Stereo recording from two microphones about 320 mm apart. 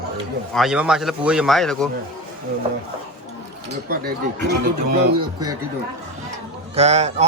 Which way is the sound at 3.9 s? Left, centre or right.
Right.